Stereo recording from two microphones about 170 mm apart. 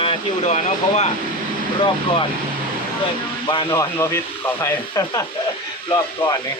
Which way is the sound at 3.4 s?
25° left (ahead or behind).